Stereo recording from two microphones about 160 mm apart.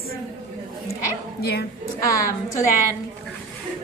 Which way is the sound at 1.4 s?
90° left.